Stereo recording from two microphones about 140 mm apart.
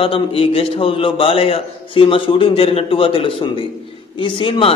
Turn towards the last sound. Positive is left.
turn(degrees=40)  # may be behind; listen again after turning